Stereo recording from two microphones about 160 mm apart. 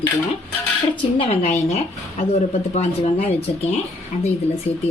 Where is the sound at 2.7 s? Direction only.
45° left (ahead or behind).